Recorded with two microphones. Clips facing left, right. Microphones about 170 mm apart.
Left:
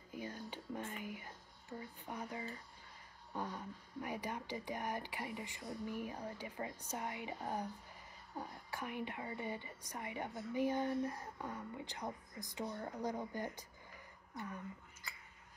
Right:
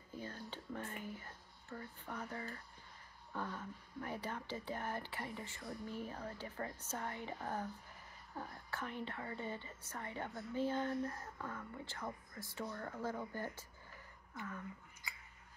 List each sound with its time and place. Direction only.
0.1 s speech: 10° left (ahead or behind)